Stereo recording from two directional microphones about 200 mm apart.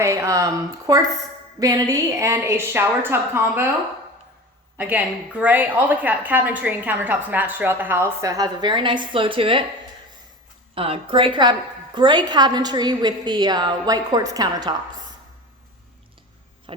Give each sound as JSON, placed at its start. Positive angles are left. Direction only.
{"t": 0.0, "sound": "a woman's voice", "side_deg": -15}
{"t": 4.8, "sound": "a woman's voice", "side_deg": -10}
{"t": 10.8, "sound": "a woman's voice", "side_deg": -25}
{"t": 16.7, "sound": "a sound", "side_deg": -25}